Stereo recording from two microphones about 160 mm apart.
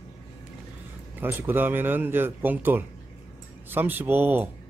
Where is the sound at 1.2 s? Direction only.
10° right (ahead or behind).